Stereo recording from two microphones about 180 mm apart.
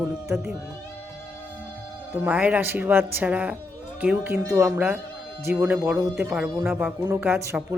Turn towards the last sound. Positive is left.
turn(degrees=-10)  # may be behind; listen again after turning